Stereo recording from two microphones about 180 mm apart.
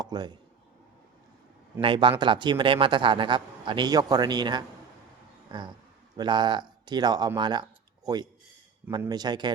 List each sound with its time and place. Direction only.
0.0 s speech: 25° right (ahead or behind)
1.8 s speech: 25° right (ahead or behind)
5.5 s a sound: 25° right (ahead or behind)
6.1 s speech: 25° right (ahead or behind)